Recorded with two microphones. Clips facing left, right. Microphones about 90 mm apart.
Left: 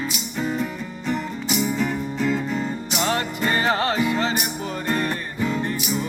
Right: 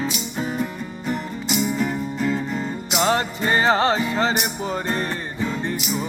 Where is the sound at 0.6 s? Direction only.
5° right (ahead or behind).